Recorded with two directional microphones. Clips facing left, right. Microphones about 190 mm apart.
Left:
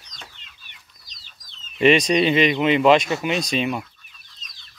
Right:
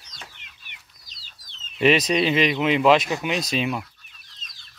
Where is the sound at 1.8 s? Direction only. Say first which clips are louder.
Left 3 dB; 5° right (ahead or behind).